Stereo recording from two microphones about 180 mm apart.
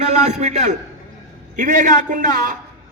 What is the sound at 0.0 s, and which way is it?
A man's voice, 40° right (ahead or behind).